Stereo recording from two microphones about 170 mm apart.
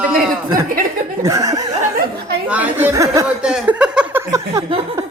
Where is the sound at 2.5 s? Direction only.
10° right (ahead or behind).